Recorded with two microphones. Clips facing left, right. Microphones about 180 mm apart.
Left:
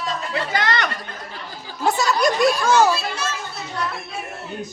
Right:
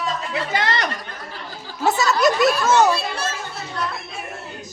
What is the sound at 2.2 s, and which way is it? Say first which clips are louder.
Children playing: right 1 dB; centre (ahead or behind).